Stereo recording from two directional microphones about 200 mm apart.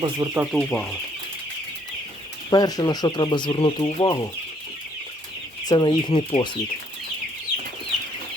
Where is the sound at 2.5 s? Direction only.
20° left (ahead or behind).